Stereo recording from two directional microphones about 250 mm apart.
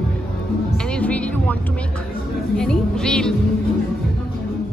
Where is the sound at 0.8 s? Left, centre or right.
Centre.